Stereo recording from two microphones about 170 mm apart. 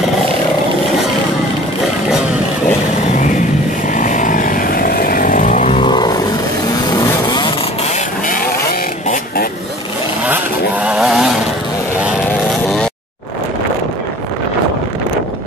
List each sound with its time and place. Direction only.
3.9 s vehicle: 50° left (ahead or behind)
5.8 s vehicle: 25° left (ahead or behind)
10.2 s vehicle: 10° right (ahead or behind)